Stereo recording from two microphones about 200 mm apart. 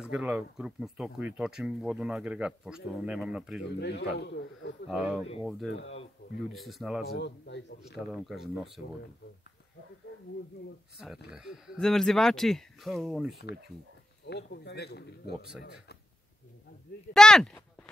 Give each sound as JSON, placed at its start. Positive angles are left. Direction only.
{"t": 0.0, "sound": "speech", "side_deg": -5}
{"t": 3.7, "sound": "speech", "side_deg": 60}
{"t": 4.8, "sound": "speech", "side_deg": 0}
{"t": 5.7, "sound": "speech", "side_deg": 65}
{"t": 6.5, "sound": "speech", "side_deg": 0}
{"t": 7.1, "sound": "speech", "side_deg": 60}
{"t": 8.1, "sound": "speech", "side_deg": 0}
{"t": 11.0, "sound": "speech", "side_deg": -5}
{"t": 14.2, "sound": "speech", "side_deg": 55}
{"t": 17.1, "sound": "speech", "side_deg": 5}